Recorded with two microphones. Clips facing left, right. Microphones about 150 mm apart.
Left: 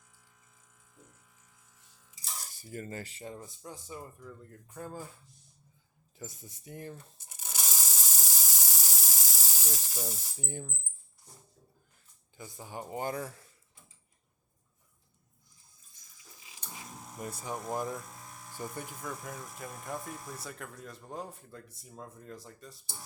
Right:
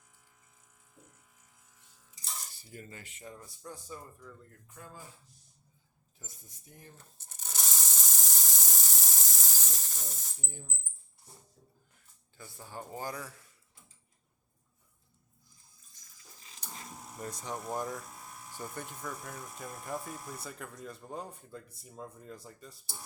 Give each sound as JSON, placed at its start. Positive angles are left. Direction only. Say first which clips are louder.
{"t": 2.6, "sound": "speech", "louder": "left 11 dB", "side_deg": 45}
{"t": 4.8, "sound": "speech", "louder": "left 8 dB", "side_deg": 40}
{"t": 6.1, "sound": "speech", "louder": "left 10 dB", "side_deg": 90}
{"t": 7.2, "sound": "a sound", "louder": "left 1 dB", "side_deg": 10}
{"t": 10.4, "sound": "speech", "louder": "left 10 dB", "side_deg": 90}
{"t": 12.4, "sound": "speech", "louder": "left 3 dB", "side_deg": 15}
{"t": 16.4, "sound": "a sound", "louder": "even", "side_deg": 10}
{"t": 17.7, "sound": "speech", "louder": "left 1 dB", "side_deg": 5}